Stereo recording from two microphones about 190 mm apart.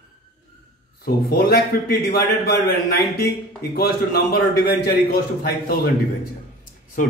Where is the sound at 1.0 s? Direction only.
55° left (ahead or behind).